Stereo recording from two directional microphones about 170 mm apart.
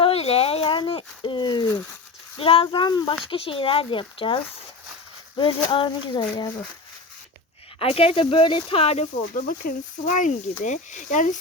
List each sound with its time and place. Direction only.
0.0 s a sound: 35° left (ahead or behind)
2.4 s speech: 35° left (ahead or behind)
5.4 s speech: 30° left (ahead or behind)
7.8 s speech: 35° left (ahead or behind)
9.3 s speech: 50° left (ahead or behind)